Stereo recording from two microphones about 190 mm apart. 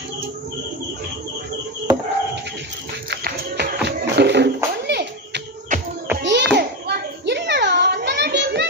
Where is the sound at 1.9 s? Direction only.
20° right (ahead or behind).